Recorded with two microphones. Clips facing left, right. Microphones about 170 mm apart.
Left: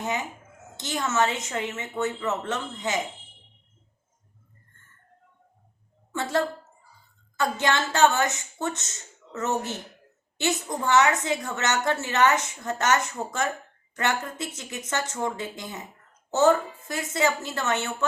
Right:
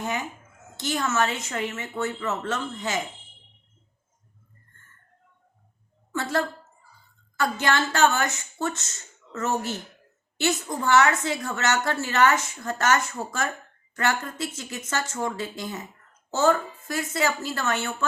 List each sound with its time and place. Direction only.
0.0 s a child's voice: 20° left (ahead or behind)
6.1 s a woman's voice: 20° left (ahead or behind)